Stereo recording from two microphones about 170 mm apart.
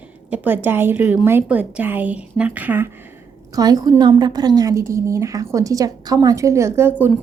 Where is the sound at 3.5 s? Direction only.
20° right (ahead or behind).